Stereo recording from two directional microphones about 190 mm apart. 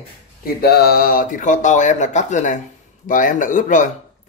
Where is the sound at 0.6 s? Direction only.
55° left (ahead or behind).